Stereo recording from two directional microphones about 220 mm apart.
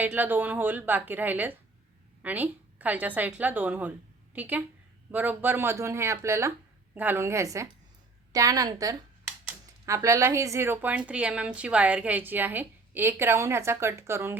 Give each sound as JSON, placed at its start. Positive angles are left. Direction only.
{"t": 0.0, "sound": "speech", "side_deg": -10}